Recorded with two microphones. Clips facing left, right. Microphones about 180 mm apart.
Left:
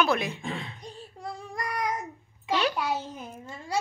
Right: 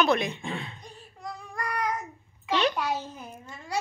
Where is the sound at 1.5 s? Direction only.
15° left (ahead or behind).